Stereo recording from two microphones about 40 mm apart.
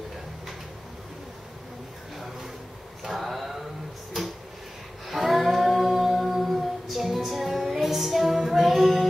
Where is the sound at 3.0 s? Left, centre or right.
Centre.